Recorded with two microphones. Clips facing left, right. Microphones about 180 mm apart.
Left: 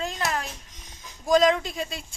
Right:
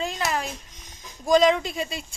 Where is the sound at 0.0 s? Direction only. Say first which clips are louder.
Right 2 dB; centre (ahead or behind).